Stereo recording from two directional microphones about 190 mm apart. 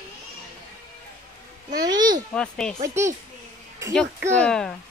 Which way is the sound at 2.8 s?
15° right (ahead or behind).